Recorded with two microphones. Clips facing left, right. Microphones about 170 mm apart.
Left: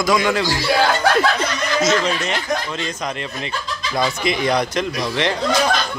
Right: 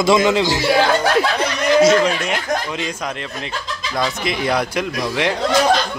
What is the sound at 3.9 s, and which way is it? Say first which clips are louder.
Speech: left 1 dB; centre (ahead or behind).